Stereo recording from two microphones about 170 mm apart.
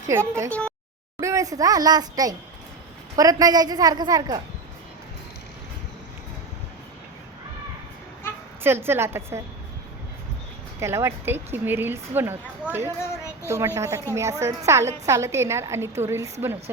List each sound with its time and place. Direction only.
0.1 s a woman's voice: 15° right (ahead or behind)
8.6 s a woman's voice: 15° right (ahead or behind)
10.8 s a woman's voice: 15° right (ahead or behind)